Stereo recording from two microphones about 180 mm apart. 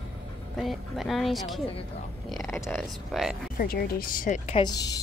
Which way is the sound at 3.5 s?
55° left (ahead or behind).